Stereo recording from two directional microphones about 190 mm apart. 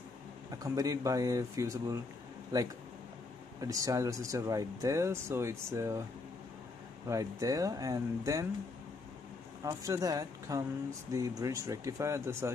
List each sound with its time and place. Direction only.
0.5 s speech: 15° right (ahead or behind)
3.6 s speech: 15° right (ahead or behind)
7.1 s speech: 15° right (ahead or behind)
9.6 s speech: 15° right (ahead or behind)